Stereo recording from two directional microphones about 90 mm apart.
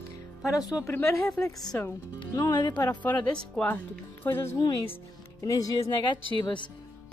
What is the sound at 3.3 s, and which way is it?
Speech, 10° left (ahead or behind).